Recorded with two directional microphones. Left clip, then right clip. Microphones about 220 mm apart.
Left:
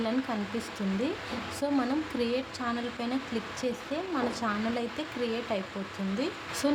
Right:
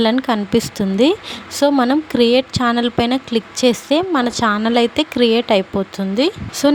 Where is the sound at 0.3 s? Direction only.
45° right (ahead or behind).